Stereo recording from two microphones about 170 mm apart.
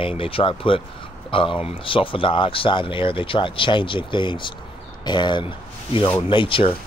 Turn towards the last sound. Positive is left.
turn(degrees=30)  # may be behind; listen again after turning